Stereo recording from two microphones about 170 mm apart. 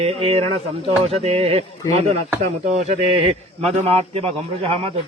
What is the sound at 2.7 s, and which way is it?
Speech, 40° right (ahead or behind).